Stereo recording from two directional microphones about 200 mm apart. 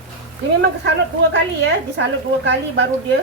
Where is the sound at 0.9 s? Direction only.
60° right (ahead or behind).